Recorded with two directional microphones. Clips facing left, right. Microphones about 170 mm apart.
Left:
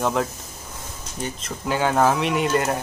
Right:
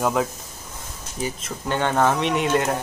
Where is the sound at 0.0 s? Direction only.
Centre (ahead or behind).